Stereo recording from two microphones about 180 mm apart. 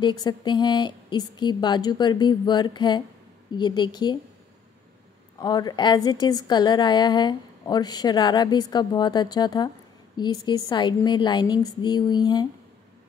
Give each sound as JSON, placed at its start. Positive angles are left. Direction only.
{"t": 0.0, "sound": "a woman's voice", "side_deg": 25}
{"t": 5.4, "sound": "a woman's voice", "side_deg": 20}